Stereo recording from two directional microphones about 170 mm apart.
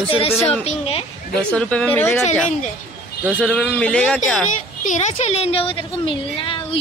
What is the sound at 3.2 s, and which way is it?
Speech, 5° left (ahead or behind).